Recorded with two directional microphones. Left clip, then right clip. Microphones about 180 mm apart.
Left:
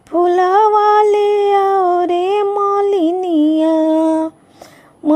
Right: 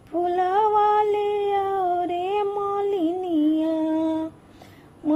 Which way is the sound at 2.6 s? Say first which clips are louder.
Left 10 dB; 45° left (ahead or behind).